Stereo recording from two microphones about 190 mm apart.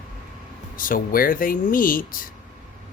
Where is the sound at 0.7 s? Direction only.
45° left (ahead or behind).